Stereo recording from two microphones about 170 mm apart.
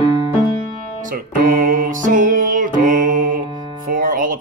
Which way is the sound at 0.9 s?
55° right (ahead or behind).